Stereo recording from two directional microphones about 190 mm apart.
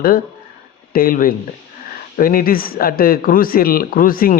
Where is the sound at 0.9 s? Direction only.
50° left (ahead or behind).